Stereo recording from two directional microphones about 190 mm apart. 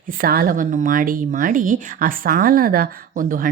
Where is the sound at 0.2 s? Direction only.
50° right (ahead or behind).